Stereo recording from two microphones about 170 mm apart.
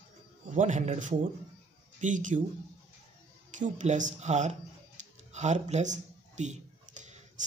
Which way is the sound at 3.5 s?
45° right (ahead or behind).